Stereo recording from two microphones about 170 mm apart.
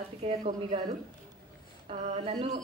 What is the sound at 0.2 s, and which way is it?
Speech, 45° right (ahead or behind).